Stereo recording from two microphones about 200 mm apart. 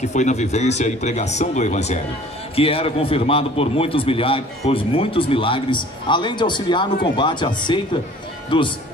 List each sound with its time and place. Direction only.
0.0 s a man's voice: 35° left (ahead or behind)